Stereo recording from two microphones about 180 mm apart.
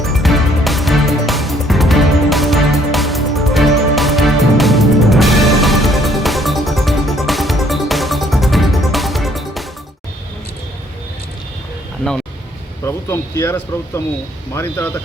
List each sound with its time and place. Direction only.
0.0 s music: centre (ahead or behind)
12.8 s speech: 15° left (ahead or behind)